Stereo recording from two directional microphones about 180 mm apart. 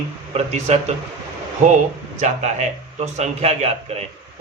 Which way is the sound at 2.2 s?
40° right (ahead or behind).